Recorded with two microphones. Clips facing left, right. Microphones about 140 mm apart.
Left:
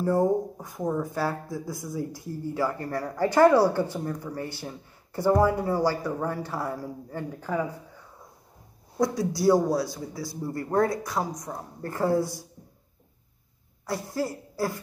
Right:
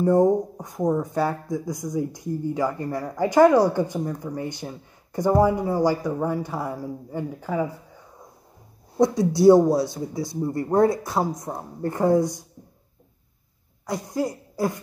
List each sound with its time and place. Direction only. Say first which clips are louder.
0.0 s speech: right 5 dB; 20° right (ahead or behind)
8.9 s speech: right 6 dB; 20° right (ahead or behind)
13.8 s speech: right 3 dB; 20° right (ahead or behind)